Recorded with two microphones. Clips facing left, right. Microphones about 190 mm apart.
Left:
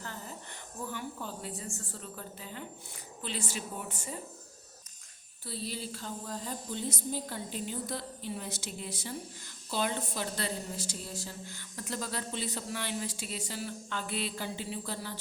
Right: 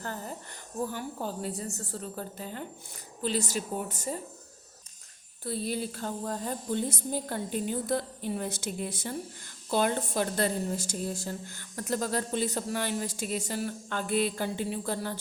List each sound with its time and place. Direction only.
0.0 s a sound: 45° right (ahead or behind)
0.8 s a woman's voice: 40° right (ahead or behind)
5.5 s a woman's voice: 55° right (ahead or behind)